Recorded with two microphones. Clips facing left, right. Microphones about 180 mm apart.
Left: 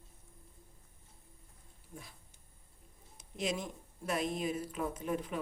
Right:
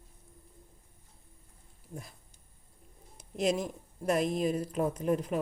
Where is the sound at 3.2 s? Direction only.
Centre (ahead or behind).